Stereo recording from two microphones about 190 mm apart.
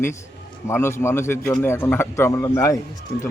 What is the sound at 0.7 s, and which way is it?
Speech, 15° left (ahead or behind).